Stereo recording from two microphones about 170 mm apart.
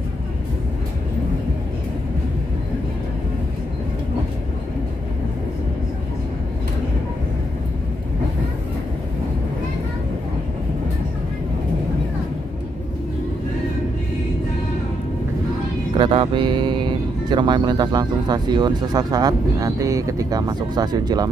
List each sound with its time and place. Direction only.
16.0 s speech: 30° right (ahead or behind)